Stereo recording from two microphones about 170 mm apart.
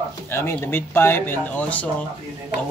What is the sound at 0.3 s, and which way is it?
Speech, 15° left (ahead or behind).